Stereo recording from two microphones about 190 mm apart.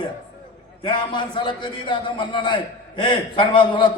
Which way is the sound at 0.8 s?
25° left (ahead or behind).